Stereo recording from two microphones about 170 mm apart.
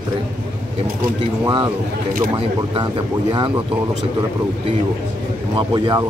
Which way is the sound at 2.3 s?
25° right (ahead or behind).